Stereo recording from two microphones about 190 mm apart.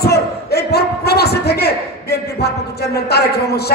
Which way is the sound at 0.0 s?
55° left (ahead or behind).